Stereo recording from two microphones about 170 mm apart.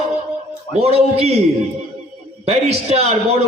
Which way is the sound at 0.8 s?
35° right (ahead or behind).